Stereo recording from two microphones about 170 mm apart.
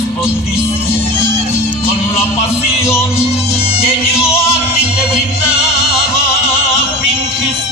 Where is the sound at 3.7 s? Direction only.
35° left (ahead or behind).